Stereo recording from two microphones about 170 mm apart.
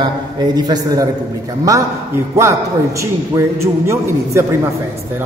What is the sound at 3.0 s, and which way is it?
A man's voice, 15° right (ahead or behind).